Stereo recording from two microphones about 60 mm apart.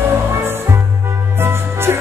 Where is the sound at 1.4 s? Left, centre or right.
Right.